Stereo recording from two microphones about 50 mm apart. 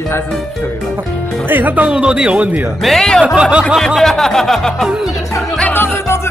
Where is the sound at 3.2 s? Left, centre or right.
Centre.